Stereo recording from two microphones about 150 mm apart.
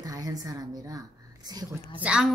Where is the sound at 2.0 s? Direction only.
5° right (ahead or behind).